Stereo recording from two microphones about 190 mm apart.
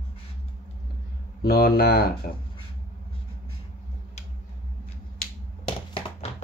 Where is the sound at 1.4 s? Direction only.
55° left (ahead or behind).